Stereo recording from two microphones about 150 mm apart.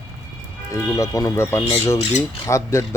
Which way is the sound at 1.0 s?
20° left (ahead or behind).